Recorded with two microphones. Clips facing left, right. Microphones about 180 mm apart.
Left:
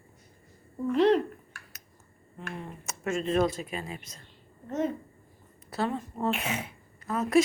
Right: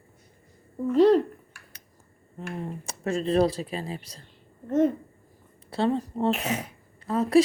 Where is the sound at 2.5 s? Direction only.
35° right (ahead or behind).